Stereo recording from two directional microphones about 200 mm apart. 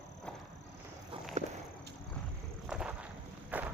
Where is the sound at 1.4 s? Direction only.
35° right (ahead or behind).